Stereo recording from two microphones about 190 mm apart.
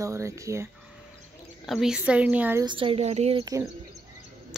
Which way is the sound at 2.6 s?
25° right (ahead or behind).